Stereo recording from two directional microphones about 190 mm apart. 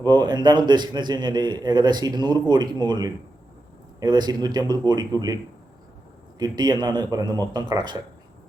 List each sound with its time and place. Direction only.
0.0 s a man's voice: 20° right (ahead or behind)
6.4 s a man's voice: 20° right (ahead or behind)